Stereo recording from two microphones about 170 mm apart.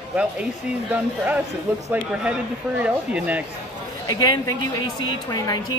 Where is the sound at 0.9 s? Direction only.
10° right (ahead or behind).